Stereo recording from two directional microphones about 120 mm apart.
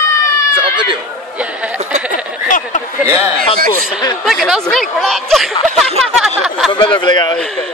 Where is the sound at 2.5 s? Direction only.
90° left.